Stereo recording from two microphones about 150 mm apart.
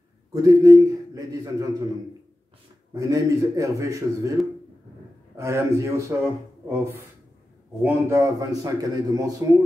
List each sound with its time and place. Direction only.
0.3 s a man's voice: 20° right (ahead or behind)
2.9 s a man's voice: 20° right (ahead or behind)
7.8 s a man's voice: 20° right (ahead or behind)